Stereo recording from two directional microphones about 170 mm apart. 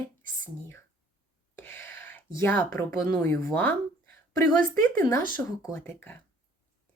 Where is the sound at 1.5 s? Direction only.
15° left (ahead or behind).